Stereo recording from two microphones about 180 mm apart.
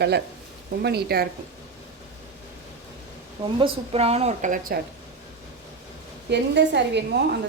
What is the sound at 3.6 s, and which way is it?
A woman's voice, 30° right (ahead or behind).